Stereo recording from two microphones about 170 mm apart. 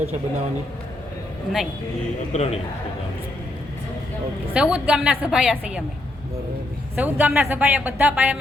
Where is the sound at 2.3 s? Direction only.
40° left (ahead or behind).